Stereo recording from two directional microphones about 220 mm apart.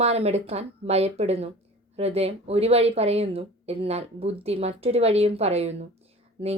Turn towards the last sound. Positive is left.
turn(degrees=-25)  # may be behind; listen again after turning